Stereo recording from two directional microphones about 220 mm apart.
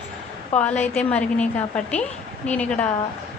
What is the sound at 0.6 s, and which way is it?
Speech, 5° left (ahead or behind).